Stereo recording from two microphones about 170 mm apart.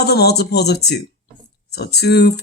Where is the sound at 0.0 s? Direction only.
75° left (ahead or behind).